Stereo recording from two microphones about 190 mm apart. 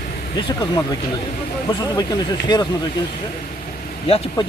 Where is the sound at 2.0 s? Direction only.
20° left (ahead or behind).